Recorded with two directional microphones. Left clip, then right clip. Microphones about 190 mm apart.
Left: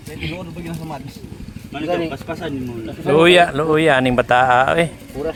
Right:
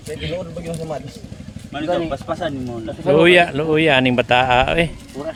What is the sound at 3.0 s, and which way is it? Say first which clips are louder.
Speech: left 1 dB; 10° right (ahead or behind).